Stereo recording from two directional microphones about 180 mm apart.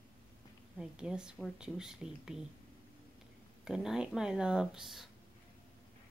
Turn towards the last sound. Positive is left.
turn(degrees=0)  # may be behind; listen again after turning